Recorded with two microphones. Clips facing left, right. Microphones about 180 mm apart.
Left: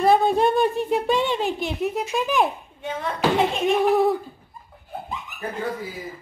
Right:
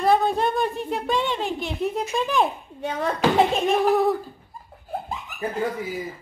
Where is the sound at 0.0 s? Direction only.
5° left (ahead or behind).